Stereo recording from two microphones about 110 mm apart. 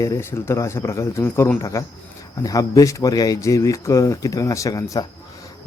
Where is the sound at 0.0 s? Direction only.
25° left (ahead or behind).